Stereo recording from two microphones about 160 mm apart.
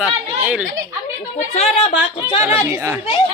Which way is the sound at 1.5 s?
40° left (ahead or behind).